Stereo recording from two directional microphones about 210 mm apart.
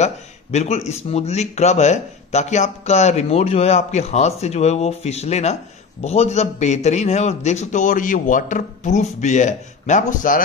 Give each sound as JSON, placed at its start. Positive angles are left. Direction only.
{"t": 0.0, "sound": "speech", "side_deg": 35}